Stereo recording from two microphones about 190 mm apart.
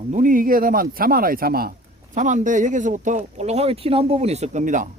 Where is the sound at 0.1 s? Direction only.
45° right (ahead or behind).